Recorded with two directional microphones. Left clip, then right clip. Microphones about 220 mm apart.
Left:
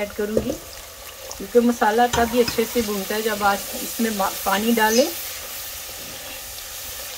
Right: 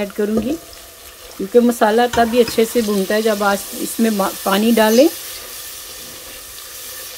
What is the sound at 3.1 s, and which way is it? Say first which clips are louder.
Speech: right 3 dB; 45° right (ahead or behind).